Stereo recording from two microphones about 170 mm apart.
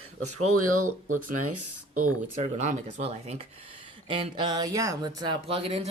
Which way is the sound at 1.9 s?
45° right (ahead or behind).